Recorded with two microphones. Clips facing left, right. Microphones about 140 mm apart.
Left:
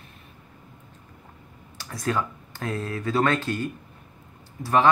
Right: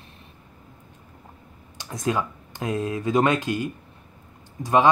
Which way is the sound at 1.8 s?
20° right (ahead or behind).